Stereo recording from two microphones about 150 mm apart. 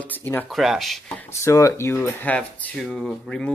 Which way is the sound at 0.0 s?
15° left (ahead or behind).